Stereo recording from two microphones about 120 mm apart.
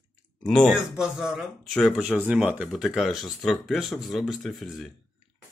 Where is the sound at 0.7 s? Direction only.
5° right (ahead or behind).